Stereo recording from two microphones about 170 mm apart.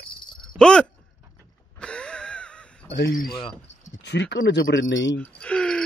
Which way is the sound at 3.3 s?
30° left (ahead or behind).